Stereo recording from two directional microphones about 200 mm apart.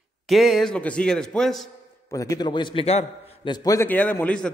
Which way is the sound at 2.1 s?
15° left (ahead or behind).